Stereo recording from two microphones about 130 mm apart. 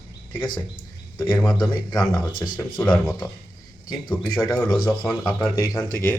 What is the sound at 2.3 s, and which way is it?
Speech, 35° left (ahead or behind).